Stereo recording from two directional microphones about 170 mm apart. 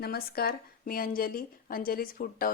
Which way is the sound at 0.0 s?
65° left (ahead or behind).